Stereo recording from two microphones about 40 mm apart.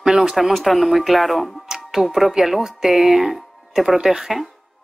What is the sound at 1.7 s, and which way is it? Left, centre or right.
Speech, centre.